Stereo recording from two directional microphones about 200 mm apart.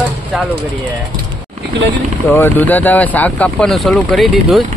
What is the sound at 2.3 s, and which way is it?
Speech, 10° left (ahead or behind).